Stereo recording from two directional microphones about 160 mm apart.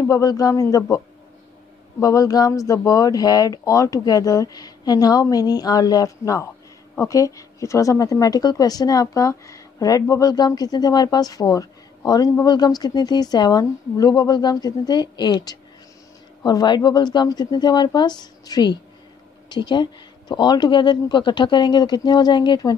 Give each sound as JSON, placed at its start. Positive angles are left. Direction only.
{"t": 0.0, "sound": "a woman's voice", "side_deg": 20}